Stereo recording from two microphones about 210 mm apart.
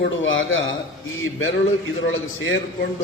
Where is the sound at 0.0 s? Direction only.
65° left (ahead or behind).